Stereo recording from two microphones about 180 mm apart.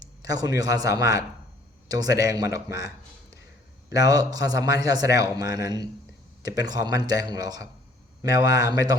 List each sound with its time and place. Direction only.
0.0 s a man's voice: 20° right (ahead or behind)